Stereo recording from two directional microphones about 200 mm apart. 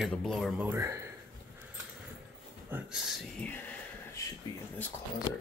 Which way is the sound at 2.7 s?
5° right (ahead or behind).